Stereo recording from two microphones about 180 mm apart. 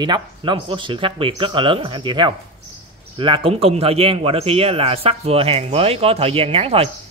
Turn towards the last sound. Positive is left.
turn(degrees=-35)  # may be behind; listen again after turning